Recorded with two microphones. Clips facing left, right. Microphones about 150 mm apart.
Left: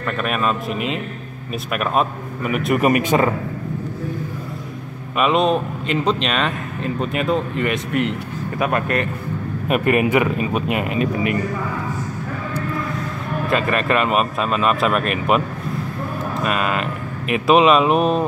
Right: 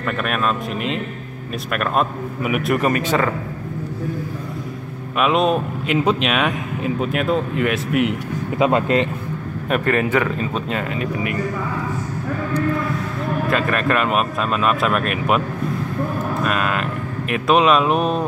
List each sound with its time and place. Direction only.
0.2 s speech: centre (ahead or behind)
2.8 s a man's voice: 15° left (ahead or behind)
5.2 s speech: centre (ahead or behind)
8.5 s speech: 20° right (ahead or behind)
9.7 s a man's voice: 15° left (ahead or behind)
13.5 s speech: centre (ahead or behind)
16.4 s sheep: centre (ahead or behind)
17.3 s speech: centre (ahead or behind)